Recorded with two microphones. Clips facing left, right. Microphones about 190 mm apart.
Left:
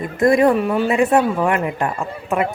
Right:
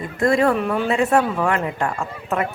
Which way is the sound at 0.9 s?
15° left (ahead or behind).